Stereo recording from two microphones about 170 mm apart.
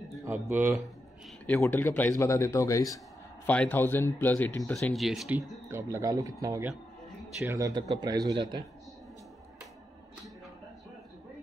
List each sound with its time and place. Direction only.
0.1 s a sound: 15° right (ahead or behind)
1.4 s a man's voice: 10° left (ahead or behind)
3.4 s a man's voice: 10° left (ahead or behind)
4.7 s speech: centre (ahead or behind)
5.7 s speech: 15° right (ahead or behind)